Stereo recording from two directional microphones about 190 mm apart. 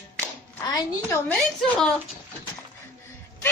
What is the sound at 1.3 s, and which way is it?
Speech, centre (ahead or behind).